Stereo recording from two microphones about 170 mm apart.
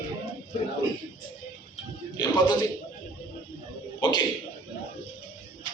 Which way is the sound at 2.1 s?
25° left (ahead or behind).